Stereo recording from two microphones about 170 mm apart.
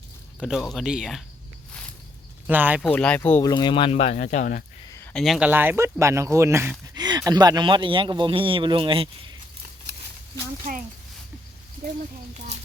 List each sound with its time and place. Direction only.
0.3 s speech: centre (ahead or behind)
2.5 s speech: 10° right (ahead or behind)
2.8 s speech: 5° left (ahead or behind)
3.5 s speech: 25° left (ahead or behind); by 4.6 s 50° left (ahead or behind)
5.1 s speech: centre (ahead or behind); by 9.0 s 30° right (ahead or behind)
9.9 s a sound: 80° right